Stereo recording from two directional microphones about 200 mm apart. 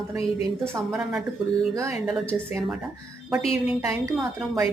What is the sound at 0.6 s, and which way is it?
Speech, centre (ahead or behind).